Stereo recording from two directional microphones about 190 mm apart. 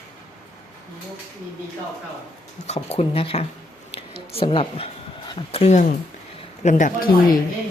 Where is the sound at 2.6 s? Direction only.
35° left (ahead or behind).